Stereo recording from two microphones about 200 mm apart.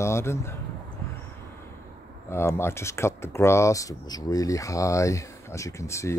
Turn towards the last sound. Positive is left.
turn(degrees=15)  # may be behind; listen again after turning